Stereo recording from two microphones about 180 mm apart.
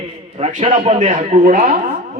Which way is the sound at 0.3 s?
35° right (ahead or behind).